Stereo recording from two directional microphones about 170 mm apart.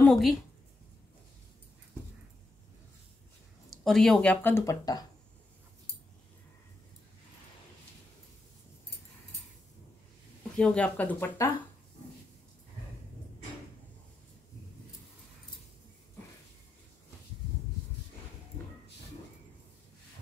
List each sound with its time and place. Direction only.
0.0 s speech: centre (ahead or behind)
3.7 s speech: centre (ahead or behind); by 5.0 s 20° left (ahead or behind)
10.6 s speech: 5° left (ahead or behind)